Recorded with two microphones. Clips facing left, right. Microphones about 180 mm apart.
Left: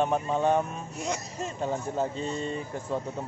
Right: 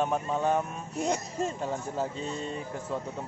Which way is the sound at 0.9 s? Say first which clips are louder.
Right 4 dB; 55° right (ahead or behind).